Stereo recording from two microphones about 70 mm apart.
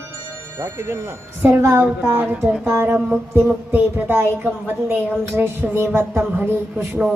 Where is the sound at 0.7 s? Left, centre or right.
Right.